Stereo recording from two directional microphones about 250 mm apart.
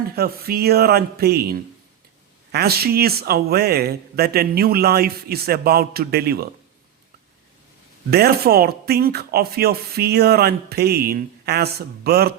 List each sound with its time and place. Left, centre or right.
0.2 s speech: right
8.1 s speech: right